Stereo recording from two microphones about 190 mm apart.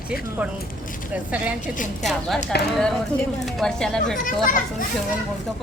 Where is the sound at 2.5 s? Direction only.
60° left (ahead or behind).